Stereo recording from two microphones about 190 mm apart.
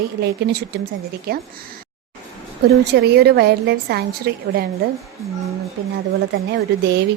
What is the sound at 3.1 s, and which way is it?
A woman's voice, 60° right (ahead or behind).